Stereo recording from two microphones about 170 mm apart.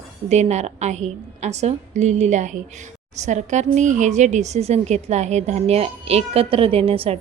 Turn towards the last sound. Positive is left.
turn(degrees=-35)  # may be behind; listen again after turning